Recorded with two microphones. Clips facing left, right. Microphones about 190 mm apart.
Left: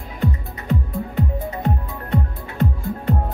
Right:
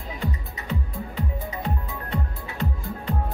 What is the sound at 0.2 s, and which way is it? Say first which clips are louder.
Music: left 9 dB; 50° left (ahead or behind).